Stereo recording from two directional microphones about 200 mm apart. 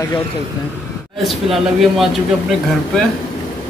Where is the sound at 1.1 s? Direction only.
Centre (ahead or behind).